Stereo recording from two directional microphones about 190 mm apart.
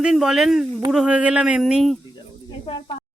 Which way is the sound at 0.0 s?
Centre (ahead or behind).